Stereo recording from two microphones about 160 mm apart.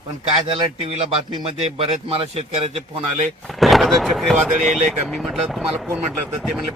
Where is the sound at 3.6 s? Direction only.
Centre (ahead or behind).